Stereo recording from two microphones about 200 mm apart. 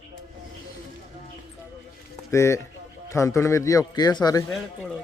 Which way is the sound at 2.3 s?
15° left (ahead or behind).